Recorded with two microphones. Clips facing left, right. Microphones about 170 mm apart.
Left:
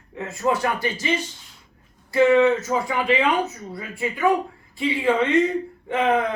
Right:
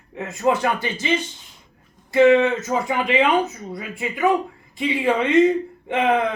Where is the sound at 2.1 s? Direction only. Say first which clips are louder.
Right 1 dB; 20° right (ahead or behind).